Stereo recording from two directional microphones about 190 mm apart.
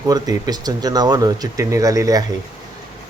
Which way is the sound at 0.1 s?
20° right (ahead or behind).